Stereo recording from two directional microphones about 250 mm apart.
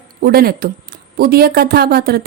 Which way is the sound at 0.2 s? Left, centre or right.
Right.